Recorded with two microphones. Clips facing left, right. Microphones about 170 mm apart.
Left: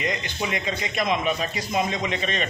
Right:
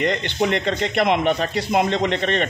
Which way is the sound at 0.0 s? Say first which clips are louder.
Right 7 dB; 65° right (ahead or behind).